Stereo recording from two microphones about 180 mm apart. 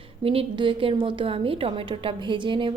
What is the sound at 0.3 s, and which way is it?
A woman's voice, 30° right (ahead or behind).